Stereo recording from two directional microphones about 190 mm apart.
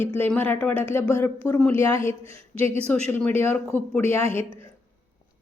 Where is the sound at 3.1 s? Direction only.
10° left (ahead or behind).